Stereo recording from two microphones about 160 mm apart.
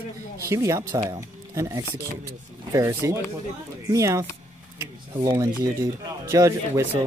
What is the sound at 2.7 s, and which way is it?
Speech, 20° right (ahead or behind).